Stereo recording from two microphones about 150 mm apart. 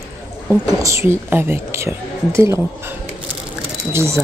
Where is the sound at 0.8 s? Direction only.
15° right (ahead or behind).